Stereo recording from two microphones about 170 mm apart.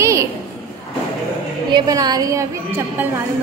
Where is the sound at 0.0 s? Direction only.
15° right (ahead or behind).